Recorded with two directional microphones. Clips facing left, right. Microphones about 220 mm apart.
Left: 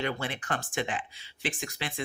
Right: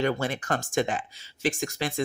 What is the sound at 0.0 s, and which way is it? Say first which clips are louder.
Speech: right 6 dB; 40° right (ahead or behind).